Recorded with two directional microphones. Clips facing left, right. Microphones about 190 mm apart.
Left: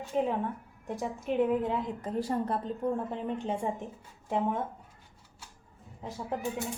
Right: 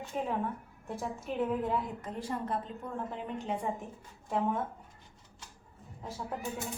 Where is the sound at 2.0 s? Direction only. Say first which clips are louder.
Left 6 dB; 35° left (ahead or behind).